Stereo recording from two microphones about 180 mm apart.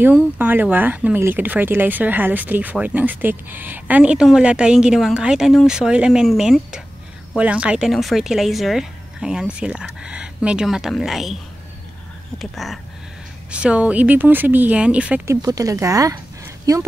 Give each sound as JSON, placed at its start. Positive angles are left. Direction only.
{"t": 0.0, "sound": "speech", "side_deg": -10}
{"t": 12.4, "sound": "speech", "side_deg": 0}
{"t": 15.4, "sound": "speech", "side_deg": -20}